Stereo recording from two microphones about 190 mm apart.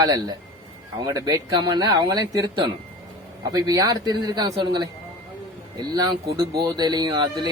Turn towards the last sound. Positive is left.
turn(degrees=-20)  # may be behind; listen again after turning